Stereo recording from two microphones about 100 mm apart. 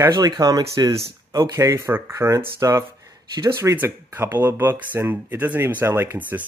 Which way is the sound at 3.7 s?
20° right (ahead or behind).